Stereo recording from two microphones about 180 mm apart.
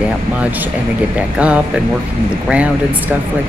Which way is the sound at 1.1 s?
5° right (ahead or behind).